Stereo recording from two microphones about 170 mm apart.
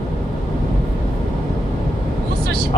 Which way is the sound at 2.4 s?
65° right (ahead or behind).